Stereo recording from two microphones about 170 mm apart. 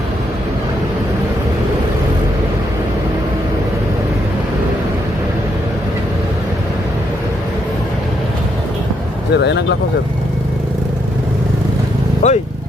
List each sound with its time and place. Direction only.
9.3 s speech: 90° left
12.2 s speech: 45° left (ahead or behind)